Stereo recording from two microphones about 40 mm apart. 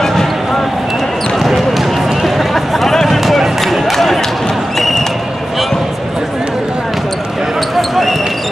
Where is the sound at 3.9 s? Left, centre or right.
Centre.